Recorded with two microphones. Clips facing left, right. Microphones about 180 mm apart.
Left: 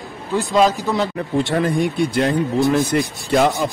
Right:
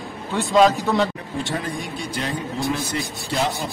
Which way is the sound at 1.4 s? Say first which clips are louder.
Left 9 dB; 60° left (ahead or behind).